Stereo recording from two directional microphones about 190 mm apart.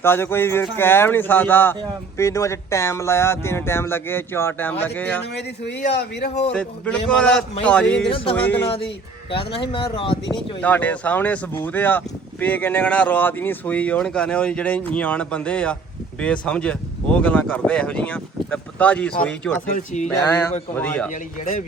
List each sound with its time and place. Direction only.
0.0 s speech: 10° left (ahead or behind)
5.9 s a man's voice: 60° left (ahead or behind)
6.5 s a man's voice: 5° left (ahead or behind)
9.6 s speech: 30° left (ahead or behind)
10.6 s speech: 10° left (ahead or behind)
19.7 s speech: 40° left (ahead or behind)
20.1 s speech: 10° left (ahead or behind)